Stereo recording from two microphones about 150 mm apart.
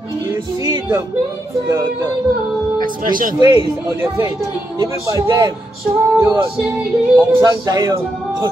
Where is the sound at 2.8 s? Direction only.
65° right (ahead or behind).